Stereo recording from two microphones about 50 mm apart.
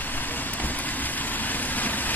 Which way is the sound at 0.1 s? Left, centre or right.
Left.